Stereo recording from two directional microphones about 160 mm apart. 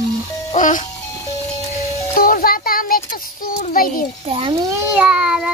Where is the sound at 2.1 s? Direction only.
65° left (ahead or behind).